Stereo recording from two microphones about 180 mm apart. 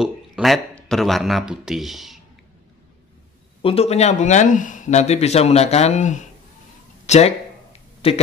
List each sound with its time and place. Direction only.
0.0 s speech: centre (ahead or behind)
3.6 s speech: 35° left (ahead or behind)